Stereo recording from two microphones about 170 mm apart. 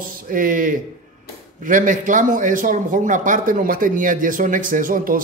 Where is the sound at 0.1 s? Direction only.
55° right (ahead or behind).